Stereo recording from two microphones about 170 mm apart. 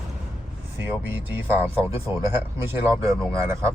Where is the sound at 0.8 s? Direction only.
15° right (ahead or behind).